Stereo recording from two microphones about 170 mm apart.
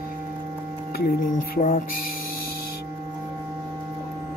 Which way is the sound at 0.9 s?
60° left (ahead or behind).